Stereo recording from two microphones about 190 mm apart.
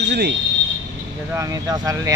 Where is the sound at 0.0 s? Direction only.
60° right (ahead or behind).